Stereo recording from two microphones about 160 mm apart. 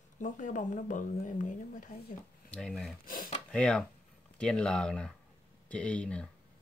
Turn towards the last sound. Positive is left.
turn(degrees=5)  # may be behind; listen again after turning